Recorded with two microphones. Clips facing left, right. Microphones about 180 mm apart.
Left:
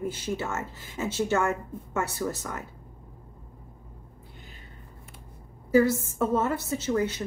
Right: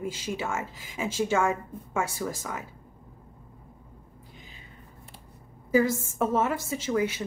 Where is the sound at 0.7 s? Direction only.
90° right.